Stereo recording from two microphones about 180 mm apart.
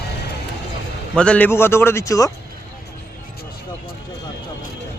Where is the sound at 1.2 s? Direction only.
5° left (ahead or behind).